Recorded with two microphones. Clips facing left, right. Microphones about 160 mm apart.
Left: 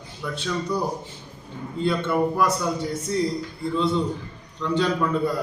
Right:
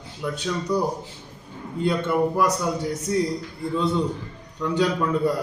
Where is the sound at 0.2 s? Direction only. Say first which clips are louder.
Right 1 dB; 15° right (ahead or behind).